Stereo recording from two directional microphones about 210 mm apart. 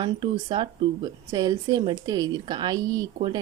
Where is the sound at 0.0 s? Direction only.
25° right (ahead or behind).